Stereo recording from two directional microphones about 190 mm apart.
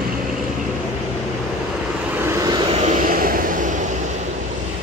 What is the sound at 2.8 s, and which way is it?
Vehicle, 40° right (ahead or behind).